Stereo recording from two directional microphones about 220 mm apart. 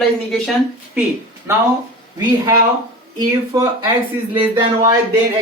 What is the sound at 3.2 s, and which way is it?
Speech, 15° right (ahead or behind).